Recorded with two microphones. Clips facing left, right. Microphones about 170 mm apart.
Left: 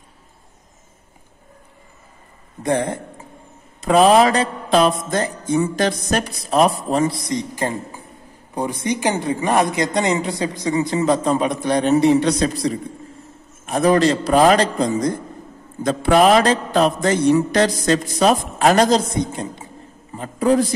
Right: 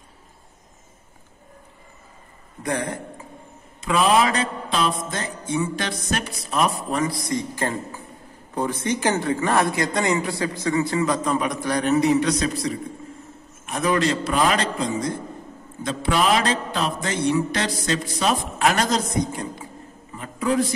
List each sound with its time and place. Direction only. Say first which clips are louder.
2.6 s speech: left 6 dB; 25° left (ahead or behind)
3.8 s mantra: left 6 dB; 40° left (ahead or behind); by 8.0 s 15° left (ahead or behind)
8.5 s speech: left 2 dB; 15° left (ahead or behind); by 12.7 s 35° left (ahead or behind)
13.7 s mantra: left 6 dB; 35° left (ahead or behind)
20.2 s a man's voice: left 6 dB; 35° left (ahead or behind)